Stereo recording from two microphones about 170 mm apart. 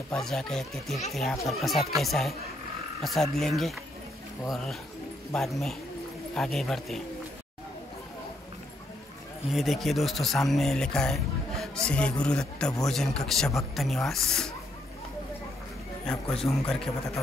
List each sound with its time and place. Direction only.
0.1 s speech: 5° left (ahead or behind)
5.3 s speech: centre (ahead or behind)
9.5 s speech: centre (ahead or behind)
16.5 s a man's voice: 15° left (ahead or behind)